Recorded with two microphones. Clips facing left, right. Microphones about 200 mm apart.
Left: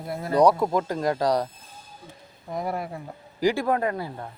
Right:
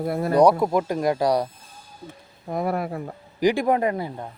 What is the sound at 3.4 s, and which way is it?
Speech, 15° right (ahead or behind).